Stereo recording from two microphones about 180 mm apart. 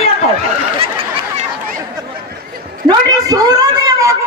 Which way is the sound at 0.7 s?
30° right (ahead or behind).